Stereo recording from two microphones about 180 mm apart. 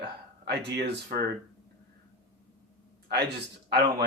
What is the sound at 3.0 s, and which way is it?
A man's voice, 65° right (ahead or behind).